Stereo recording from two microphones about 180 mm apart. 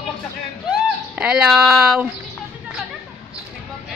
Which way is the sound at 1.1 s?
5° right (ahead or behind).